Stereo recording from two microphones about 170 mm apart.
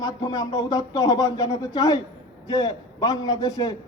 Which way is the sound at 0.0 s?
25° left (ahead or behind).